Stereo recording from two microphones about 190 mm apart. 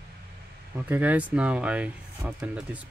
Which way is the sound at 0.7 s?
10° right (ahead or behind).